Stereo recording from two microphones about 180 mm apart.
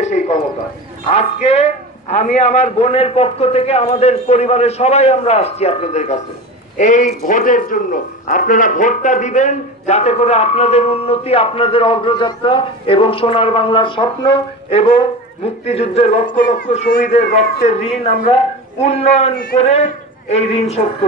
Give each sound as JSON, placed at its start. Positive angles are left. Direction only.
{"t": 0.0, "sound": "bird", "side_deg": 40}
{"t": 1.0, "sound": "speech", "side_deg": 35}
{"t": 16.5, "sound": "speech", "side_deg": 50}